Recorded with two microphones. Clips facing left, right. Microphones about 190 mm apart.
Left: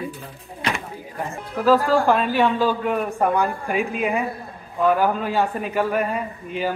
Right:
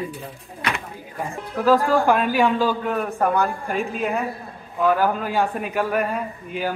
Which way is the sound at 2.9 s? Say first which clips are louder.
Left 1 dB; 10° left (ahead or behind).